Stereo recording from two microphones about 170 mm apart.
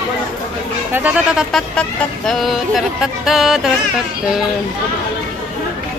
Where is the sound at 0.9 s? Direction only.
10° right (ahead or behind).